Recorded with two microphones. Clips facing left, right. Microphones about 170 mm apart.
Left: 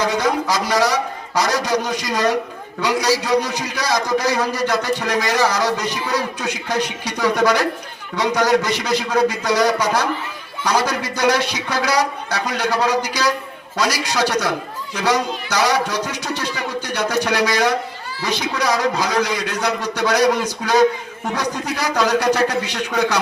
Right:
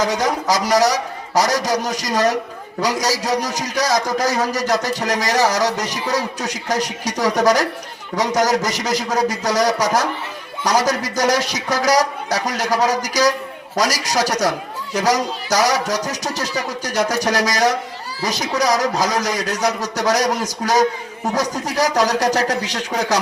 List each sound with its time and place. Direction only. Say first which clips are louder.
0.0 s a man's voice: even; 40° right (ahead or behind)